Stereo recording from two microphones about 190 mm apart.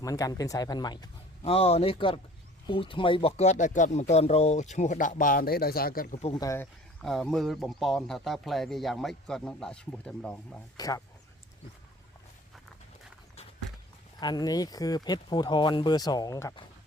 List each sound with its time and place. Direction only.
0.0 s speech: 20° left (ahead or behind)
1.4 s speech: 30° left (ahead or behind); by 6.1 s 50° left (ahead or behind)
6.3 s speech: 15° left (ahead or behind)
7.0 s speech: centre (ahead or behind)
10.8 s speech: 20° left (ahead or behind)
14.2 s speech: 20° left (ahead or behind)